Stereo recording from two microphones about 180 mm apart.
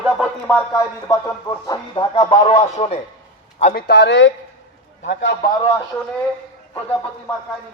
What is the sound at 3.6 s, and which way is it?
Speech, 60° left (ahead or behind).